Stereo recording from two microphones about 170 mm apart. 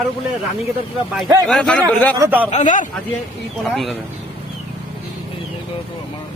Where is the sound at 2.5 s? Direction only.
45° left (ahead or behind).